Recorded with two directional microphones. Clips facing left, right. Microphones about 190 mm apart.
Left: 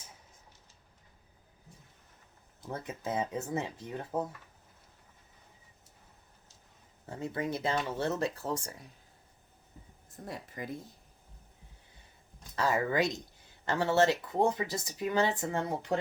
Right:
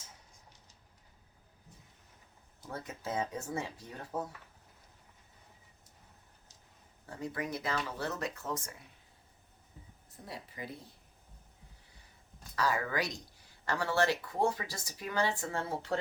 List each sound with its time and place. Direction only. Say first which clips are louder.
2.6 s speech: left 3 dB; 20° left (ahead or behind)
7.2 s speech: left 4 dB; 25° left (ahead or behind)
10.1 s speech: left 4 dB; 50° left (ahead or behind)
12.5 s speech: left 4 dB; 25° left (ahead or behind)